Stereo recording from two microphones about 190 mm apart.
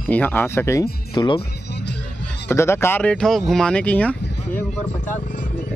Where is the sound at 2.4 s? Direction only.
15° left (ahead or behind).